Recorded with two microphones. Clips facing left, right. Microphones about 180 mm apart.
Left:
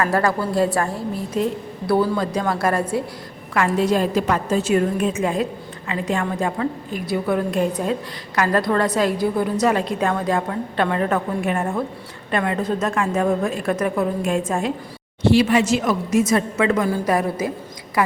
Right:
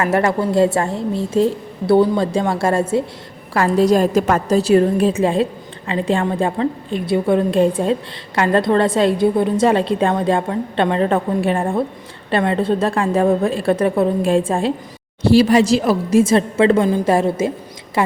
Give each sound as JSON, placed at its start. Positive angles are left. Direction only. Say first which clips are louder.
{"t": 0.0, "sound": "a woman's voice", "louder": "right 3 dB", "side_deg": -25}
{"t": 3.5, "sound": "a woman's voice", "louder": "right 5 dB", "side_deg": -35}